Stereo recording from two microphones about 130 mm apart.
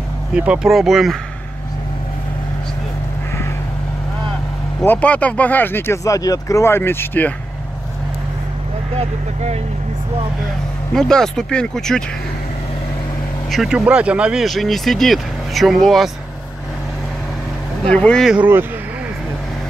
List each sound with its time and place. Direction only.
0.3 s speech: 5° right (ahead or behind)
4.8 s speech: 10° left (ahead or behind)
8.9 s speech: 55° right (ahead or behind)
11.0 s speech: 5° left (ahead or behind)
13.5 s speech: 5° right (ahead or behind)
17.8 s speech: 10° left (ahead or behind)
18.3 s speech: 15° right (ahead or behind)